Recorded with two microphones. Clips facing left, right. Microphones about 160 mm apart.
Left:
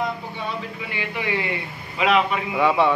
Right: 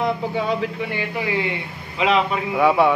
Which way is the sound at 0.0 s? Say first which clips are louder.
Right 6 dB; 90° right.